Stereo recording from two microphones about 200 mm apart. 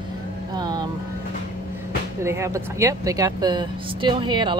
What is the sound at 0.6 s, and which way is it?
Speech, 20° right (ahead or behind).